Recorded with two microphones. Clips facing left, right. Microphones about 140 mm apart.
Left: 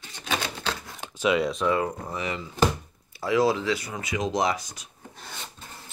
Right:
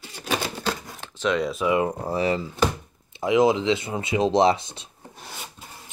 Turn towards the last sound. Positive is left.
turn(degrees=-10)  # may be behind; listen again after turning